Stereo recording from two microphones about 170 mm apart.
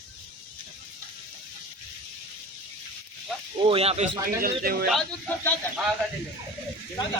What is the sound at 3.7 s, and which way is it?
Speech, 35° right (ahead or behind).